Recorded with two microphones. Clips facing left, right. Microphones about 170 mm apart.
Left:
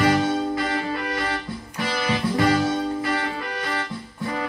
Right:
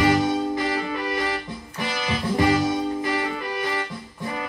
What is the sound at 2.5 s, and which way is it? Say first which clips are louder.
Music: even; 10° right (ahead or behind).